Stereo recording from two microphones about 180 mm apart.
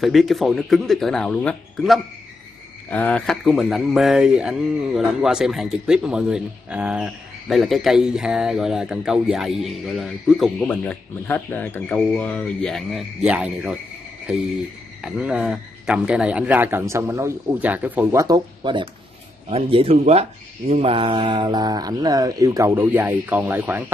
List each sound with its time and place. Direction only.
0.0 s speech: centre (ahead or behind)
15.0 s speech: 5° right (ahead or behind)